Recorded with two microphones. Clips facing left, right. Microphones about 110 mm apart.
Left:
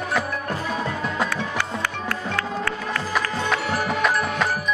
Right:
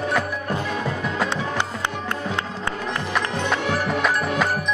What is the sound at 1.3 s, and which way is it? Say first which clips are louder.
Music: right 1 dB; 20° right (ahead or behind).